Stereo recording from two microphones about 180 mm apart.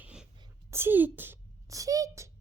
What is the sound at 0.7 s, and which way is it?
A child's voice, 10° right (ahead or behind).